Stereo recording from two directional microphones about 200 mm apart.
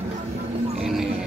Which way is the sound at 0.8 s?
Centre (ahead or behind).